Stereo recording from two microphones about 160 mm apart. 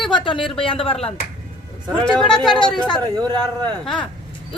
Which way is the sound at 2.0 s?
5° left (ahead or behind).